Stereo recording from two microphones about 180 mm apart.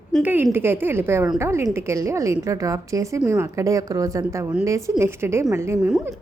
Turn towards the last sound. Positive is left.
turn(degrees=-15)  # may be behind; listen again after turning